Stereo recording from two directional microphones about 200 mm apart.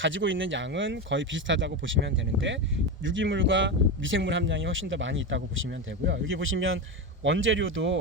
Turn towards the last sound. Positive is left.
turn(degrees=-70)  # may be behind; listen again after turning